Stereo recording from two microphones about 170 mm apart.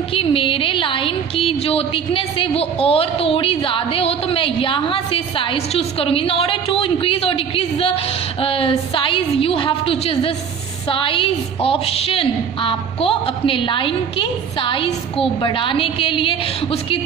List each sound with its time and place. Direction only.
0.1 s a woman's voice: 30° left (ahead or behind)